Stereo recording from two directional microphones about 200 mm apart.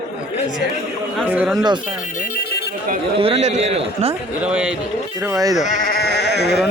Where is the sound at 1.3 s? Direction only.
5° right (ahead or behind).